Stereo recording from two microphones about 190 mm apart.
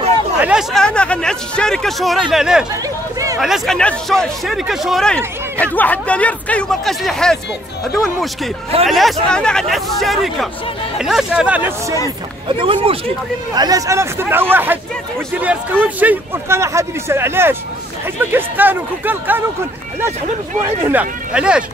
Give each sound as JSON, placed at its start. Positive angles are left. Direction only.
{"t": 0.4, "sound": "speech", "side_deg": -5}
{"t": 8.8, "sound": "speech", "side_deg": 0}
{"t": 12.4, "sound": "speech", "side_deg": -25}
{"t": 20.8, "sound": "speech", "side_deg": -10}